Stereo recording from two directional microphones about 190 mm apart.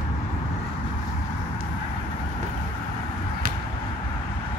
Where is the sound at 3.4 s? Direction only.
50° right (ahead or behind).